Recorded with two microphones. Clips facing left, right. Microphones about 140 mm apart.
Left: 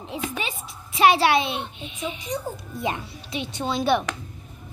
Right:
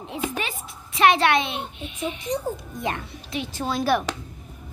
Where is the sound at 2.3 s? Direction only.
20° right (ahead or behind).